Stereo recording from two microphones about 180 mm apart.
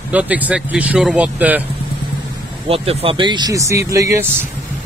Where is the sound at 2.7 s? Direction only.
35° right (ahead or behind); by 4.3 s 15° right (ahead or behind).